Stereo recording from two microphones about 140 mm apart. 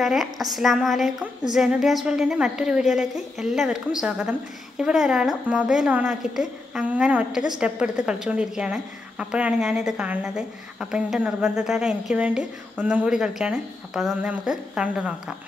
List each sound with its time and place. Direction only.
0.0 s a woman's voice: centre (ahead or behind)